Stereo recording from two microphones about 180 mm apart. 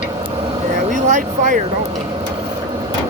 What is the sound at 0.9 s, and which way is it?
Speech, 45° right (ahead or behind).